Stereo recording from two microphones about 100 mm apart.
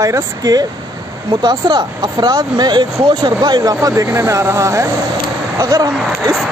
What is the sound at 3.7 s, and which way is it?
Speech, 30° right (ahead or behind).